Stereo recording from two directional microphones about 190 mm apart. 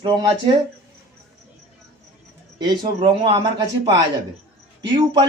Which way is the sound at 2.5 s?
25° right (ahead or behind).